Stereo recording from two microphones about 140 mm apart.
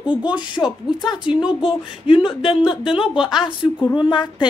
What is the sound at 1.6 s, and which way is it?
A woman's voice, 40° left (ahead or behind).